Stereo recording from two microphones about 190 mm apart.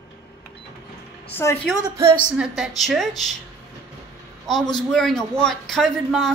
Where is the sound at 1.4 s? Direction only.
15° left (ahead or behind).